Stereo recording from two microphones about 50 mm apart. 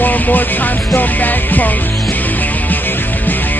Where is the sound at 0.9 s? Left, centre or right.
Left.